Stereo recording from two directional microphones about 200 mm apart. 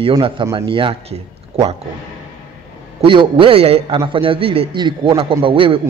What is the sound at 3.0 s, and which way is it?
A man's voice, 25° right (ahead or behind).